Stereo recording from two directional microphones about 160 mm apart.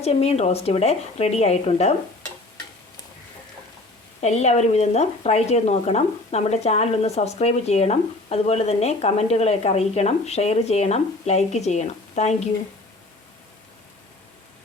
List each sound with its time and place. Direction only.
0.0 s speech: 40° left (ahead or behind)
4.2 s speech: 45° left (ahead or behind)